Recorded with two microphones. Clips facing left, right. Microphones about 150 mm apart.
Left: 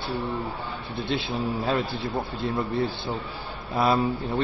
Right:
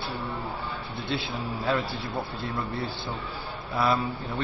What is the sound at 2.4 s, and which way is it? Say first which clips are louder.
Speech: left 5 dB; 20° left (ahead or behind).